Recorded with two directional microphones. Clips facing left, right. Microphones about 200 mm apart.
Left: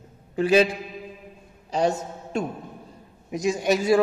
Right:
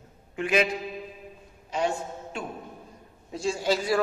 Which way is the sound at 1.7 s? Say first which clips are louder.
Left 4 dB; 40° left (ahead or behind).